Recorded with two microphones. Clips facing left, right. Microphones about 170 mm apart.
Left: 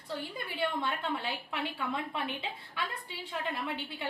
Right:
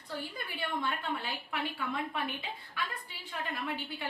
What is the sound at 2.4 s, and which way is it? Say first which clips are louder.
Speech: left 1 dB; 25° left (ahead or behind).